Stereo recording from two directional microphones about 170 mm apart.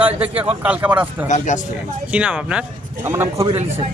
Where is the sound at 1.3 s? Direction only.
45° left (ahead or behind).